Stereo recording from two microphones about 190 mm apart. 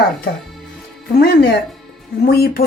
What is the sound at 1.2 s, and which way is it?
A woman's voice, 55° left (ahead or behind).